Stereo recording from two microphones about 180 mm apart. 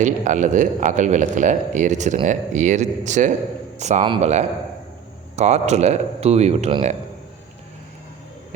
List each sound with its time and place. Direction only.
0.0 s speech: 45° right (ahead or behind)